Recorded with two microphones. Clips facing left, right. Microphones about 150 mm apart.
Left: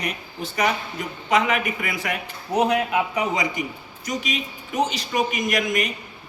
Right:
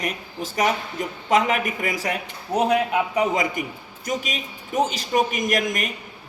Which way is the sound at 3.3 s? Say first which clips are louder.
Right 1 dB; 50° right (ahead or behind).